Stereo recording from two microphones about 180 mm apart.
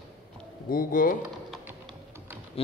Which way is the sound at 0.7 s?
50° left (ahead or behind).